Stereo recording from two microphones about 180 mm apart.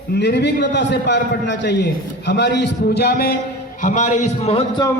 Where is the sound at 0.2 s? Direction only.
70° left (ahead or behind).